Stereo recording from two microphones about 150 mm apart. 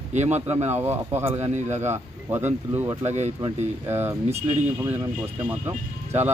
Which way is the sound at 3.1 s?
50° right (ahead or behind).